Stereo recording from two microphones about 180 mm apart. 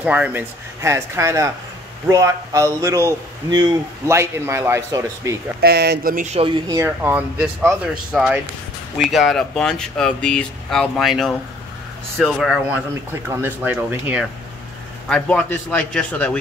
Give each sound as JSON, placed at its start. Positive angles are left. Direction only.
{"t": 0.0, "sound": "a man's voice", "side_deg": -10}
{"t": 5.6, "sound": "speech", "side_deg": -65}
{"t": 6.7, "sound": "a man's voice", "side_deg": -15}
{"t": 12.6, "sound": "a man's voice", "side_deg": -10}
{"t": 15.0, "sound": "a man's voice", "side_deg": 5}